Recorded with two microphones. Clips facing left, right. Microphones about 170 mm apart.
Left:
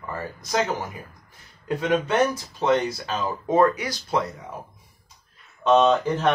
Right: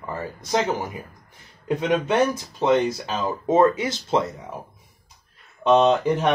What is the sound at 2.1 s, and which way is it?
Speech, 15° right (ahead or behind).